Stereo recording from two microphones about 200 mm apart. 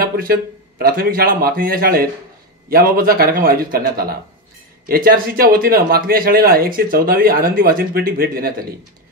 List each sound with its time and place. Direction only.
0.0 s speech: 45° right (ahead or behind)